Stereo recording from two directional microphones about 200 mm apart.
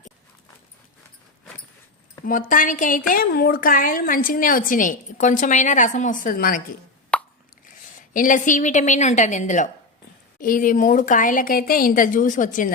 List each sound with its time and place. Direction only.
2.2 s a woman's voice: 40° left (ahead or behind)
7.1 s plop: 5° left (ahead or behind)
8.1 s a woman's voice: 40° left (ahead or behind)